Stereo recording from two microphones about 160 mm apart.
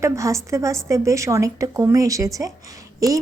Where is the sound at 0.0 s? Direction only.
20° right (ahead or behind).